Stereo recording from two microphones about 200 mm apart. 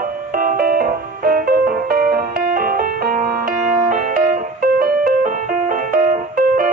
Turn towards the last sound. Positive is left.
turn(degrees=-40)  # may be behind; listen again after turning